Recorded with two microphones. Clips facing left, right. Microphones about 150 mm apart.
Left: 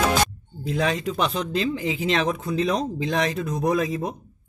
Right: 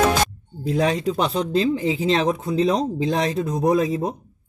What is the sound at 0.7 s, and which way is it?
Speech, 35° right (ahead or behind).